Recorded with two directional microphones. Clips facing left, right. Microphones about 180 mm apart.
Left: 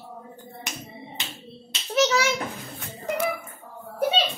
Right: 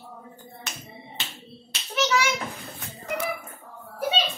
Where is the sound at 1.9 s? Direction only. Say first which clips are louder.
Left 3 dB; 40° left (ahead or behind).